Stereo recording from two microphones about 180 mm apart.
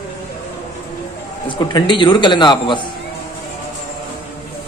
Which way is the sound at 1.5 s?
25° left (ahead or behind).